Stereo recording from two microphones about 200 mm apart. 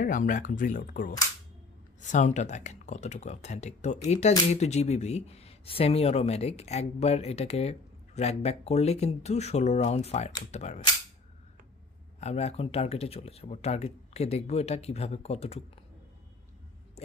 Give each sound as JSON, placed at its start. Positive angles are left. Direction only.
{"t": 0.0, "sound": "speech", "side_deg": 40}
{"t": 12.2, "sound": "speech", "side_deg": 35}